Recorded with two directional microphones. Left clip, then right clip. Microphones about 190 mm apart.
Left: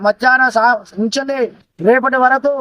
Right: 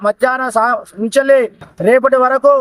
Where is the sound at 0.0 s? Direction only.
35° right (ahead or behind).